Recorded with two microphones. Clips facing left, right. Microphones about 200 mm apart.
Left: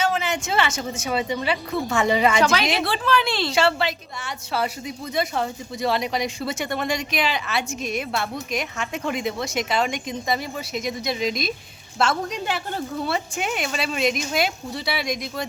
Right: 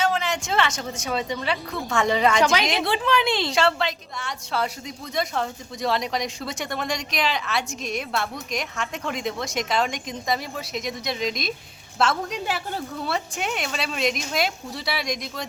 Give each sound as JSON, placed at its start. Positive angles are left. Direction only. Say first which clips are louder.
{"t": 0.0, "sound": "speech", "louder": "left 1 dB", "side_deg": 5}
{"t": 2.4, "sound": "a woman's voice", "louder": "left 1 dB", "side_deg": -15}
{"t": 3.5, "sound": "speech", "louder": "left 1 dB", "side_deg": 5}